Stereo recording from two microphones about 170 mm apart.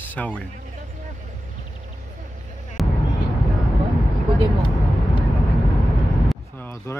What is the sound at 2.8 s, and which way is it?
Vehicle, centre (ahead or behind).